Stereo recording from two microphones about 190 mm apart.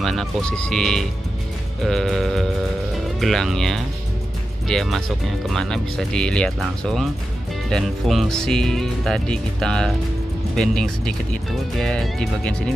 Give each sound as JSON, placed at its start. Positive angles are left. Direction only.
{"t": 0.0, "sound": "speech", "side_deg": 0}